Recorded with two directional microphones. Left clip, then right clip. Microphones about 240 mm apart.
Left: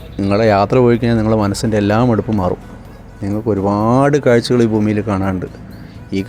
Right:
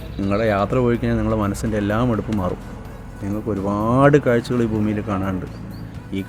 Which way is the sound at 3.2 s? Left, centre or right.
Left.